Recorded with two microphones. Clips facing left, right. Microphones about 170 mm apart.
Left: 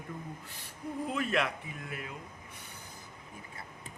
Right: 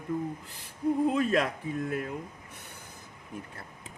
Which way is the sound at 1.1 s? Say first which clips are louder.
Right 5 dB; 40° right (ahead or behind).